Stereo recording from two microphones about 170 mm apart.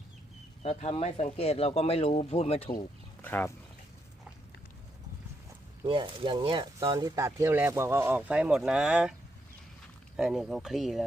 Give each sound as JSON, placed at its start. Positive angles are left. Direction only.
{"t": 0.6, "sound": "speech", "side_deg": 40}
{"t": 3.2, "sound": "speech", "side_deg": 10}
{"t": 5.8, "sound": "speech", "side_deg": -25}
{"t": 10.2, "sound": "speech", "side_deg": 0}